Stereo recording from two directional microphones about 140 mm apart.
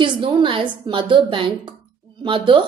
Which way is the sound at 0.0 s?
35° right (ahead or behind).